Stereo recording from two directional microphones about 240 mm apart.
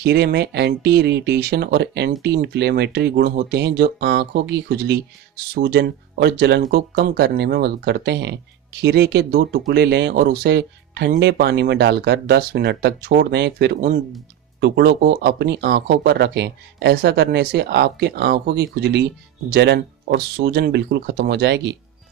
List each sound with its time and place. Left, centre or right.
0.0 s speech: right